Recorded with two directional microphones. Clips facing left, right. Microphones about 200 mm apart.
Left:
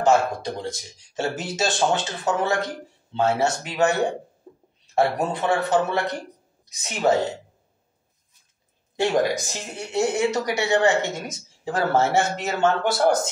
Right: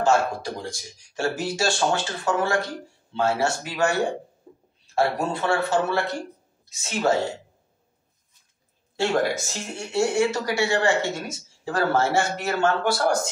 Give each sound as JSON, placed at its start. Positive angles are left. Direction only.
{"t": 0.0, "sound": "speech", "side_deg": 20}
{"t": 8.9, "sound": "speech", "side_deg": 15}